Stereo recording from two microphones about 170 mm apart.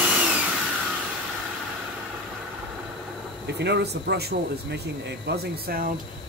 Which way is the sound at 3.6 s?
85° right.